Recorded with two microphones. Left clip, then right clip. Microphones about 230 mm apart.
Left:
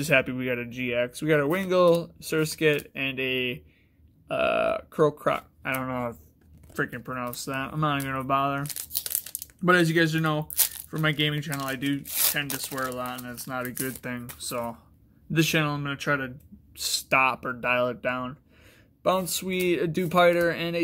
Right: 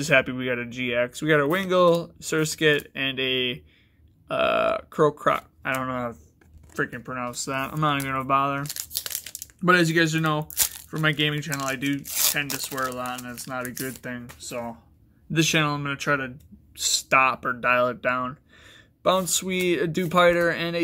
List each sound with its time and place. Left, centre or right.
0.0 s speech: centre
15.3 s speech: centre